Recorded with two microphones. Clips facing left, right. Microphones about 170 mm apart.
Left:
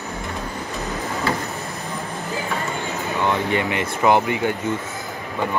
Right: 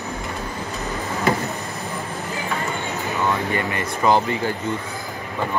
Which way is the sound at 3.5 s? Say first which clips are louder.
Left 2 dB; 20° left (ahead or behind).